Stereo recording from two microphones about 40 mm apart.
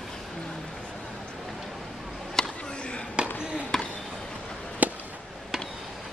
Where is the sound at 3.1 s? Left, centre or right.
Right.